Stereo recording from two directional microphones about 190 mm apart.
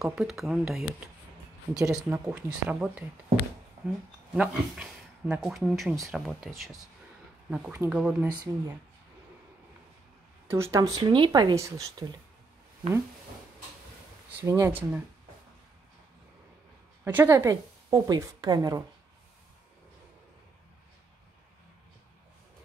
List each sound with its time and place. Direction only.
0.0 s a woman's voice: centre (ahead or behind)
4.3 s a woman's voice: 5° right (ahead or behind)
10.5 s speech: 15° right (ahead or behind)
14.3 s a woman's voice: 15° right (ahead or behind)
17.0 s a woman's voice: 15° right (ahead or behind)